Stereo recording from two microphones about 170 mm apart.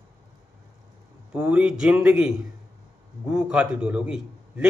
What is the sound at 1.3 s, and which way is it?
A man's voice, 5° right (ahead or behind).